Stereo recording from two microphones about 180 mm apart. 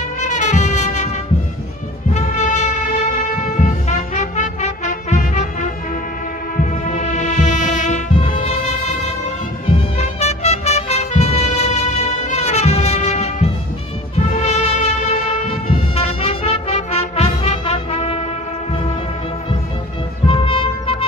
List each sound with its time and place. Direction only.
0.2 s brass instrument: 40° left (ahead or behind)
2.1 s music: 40° left (ahead or behind)
9.9 s music: 35° left (ahead or behind)
20.2 s music: 30° left (ahead or behind)